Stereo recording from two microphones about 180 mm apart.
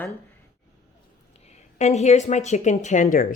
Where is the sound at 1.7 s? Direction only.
40° left (ahead or behind).